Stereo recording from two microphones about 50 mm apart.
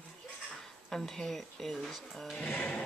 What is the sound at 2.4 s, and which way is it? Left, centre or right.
Music, left.